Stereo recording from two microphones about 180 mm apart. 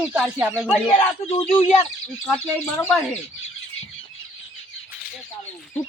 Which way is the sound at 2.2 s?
5° left (ahead or behind).